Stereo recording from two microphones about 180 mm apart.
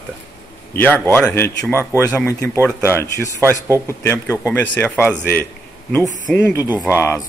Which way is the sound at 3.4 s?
15° right (ahead or behind).